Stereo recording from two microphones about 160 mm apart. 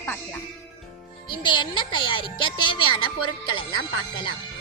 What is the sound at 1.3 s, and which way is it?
Speech, 30° left (ahead or behind).